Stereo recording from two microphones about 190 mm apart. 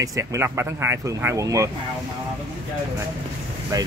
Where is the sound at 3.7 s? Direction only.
20° right (ahead or behind).